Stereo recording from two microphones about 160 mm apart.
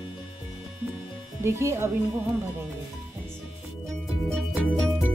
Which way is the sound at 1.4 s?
15° right (ahead or behind).